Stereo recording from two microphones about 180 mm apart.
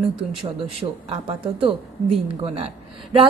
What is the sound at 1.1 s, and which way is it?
A woman's voice, 30° right (ahead or behind).